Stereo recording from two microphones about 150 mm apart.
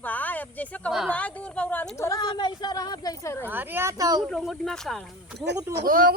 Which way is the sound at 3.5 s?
15° right (ahead or behind).